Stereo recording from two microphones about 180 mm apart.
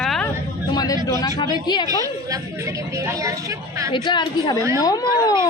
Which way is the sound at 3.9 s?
25° left (ahead or behind).